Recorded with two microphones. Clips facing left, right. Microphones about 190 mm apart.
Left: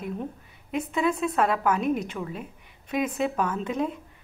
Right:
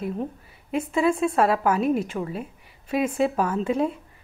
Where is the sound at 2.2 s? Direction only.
30° right (ahead or behind).